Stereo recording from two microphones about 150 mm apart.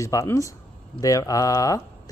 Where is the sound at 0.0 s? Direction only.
20° left (ahead or behind).